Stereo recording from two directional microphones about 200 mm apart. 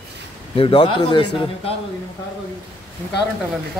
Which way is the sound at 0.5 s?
25° left (ahead or behind).